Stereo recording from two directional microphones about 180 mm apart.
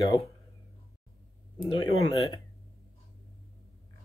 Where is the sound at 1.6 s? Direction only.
25° left (ahead or behind).